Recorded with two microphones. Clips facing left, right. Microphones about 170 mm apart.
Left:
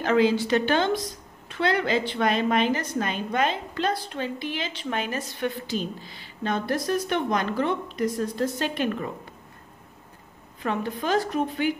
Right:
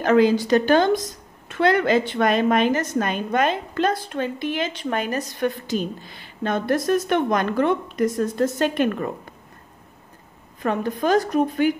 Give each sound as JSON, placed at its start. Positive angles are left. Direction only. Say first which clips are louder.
{"t": 0.0, "sound": "a woman's voice", "louder": "right 4 dB", "side_deg": -45}
{"t": 10.6, "sound": "a woman's voice", "louder": "right 5 dB", "side_deg": -45}